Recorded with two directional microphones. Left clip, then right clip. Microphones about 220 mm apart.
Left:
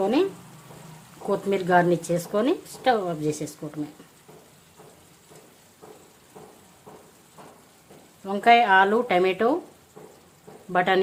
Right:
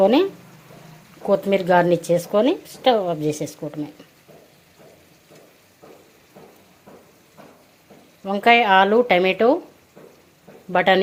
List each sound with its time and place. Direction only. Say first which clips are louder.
0.0 s speech: right 7 dB; 20° right (ahead or behind)
1.3 s speech: right 5 dB; 15° right (ahead or behind)
8.2 s speech: right 2 dB; 15° right (ahead or behind)
10.7 s speech: right 5 dB; 15° right (ahead or behind)